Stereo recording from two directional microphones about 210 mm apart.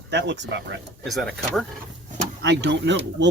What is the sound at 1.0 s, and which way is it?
Speech, centre (ahead or behind).